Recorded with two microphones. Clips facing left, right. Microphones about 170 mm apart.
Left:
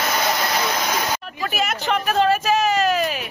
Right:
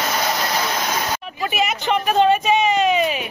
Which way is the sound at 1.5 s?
Centre (ahead or behind).